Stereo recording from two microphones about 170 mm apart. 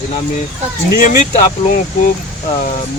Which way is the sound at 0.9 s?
50° left (ahead or behind).